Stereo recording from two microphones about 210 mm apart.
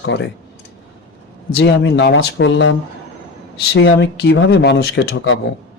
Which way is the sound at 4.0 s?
50° left (ahead or behind).